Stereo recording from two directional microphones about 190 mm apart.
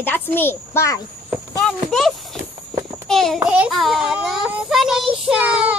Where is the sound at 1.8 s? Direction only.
Centre (ahead or behind).